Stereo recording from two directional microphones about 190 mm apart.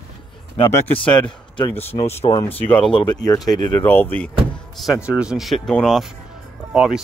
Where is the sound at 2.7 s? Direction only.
30° left (ahead or behind); by 4.3 s 10° left (ahead or behind).